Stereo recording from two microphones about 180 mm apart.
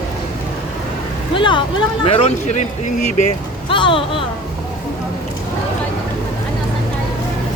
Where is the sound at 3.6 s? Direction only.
30° left (ahead or behind).